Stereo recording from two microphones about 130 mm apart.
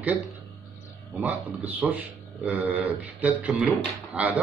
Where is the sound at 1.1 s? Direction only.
10° right (ahead or behind).